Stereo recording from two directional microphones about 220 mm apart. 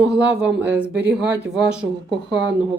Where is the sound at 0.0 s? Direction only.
5° right (ahead or behind).